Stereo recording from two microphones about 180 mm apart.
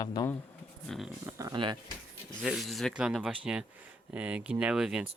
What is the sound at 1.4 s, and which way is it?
Speech, 20° right (ahead or behind).